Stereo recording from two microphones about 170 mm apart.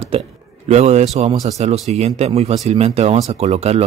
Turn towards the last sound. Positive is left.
turn(degrees=-40)  # may be behind; listen again after turning